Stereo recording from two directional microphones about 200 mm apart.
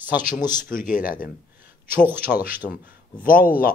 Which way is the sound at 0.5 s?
45° left (ahead or behind).